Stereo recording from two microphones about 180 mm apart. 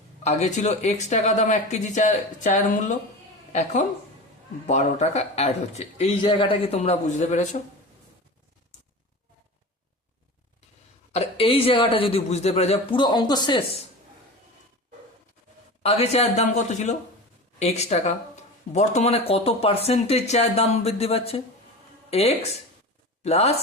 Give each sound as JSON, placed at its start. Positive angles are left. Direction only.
{"t": 0.2, "sound": "speech", "side_deg": 40}
{"t": 11.1, "sound": "speech", "side_deg": 35}
{"t": 15.8, "sound": "speech", "side_deg": 35}
{"t": 23.2, "sound": "speech", "side_deg": 35}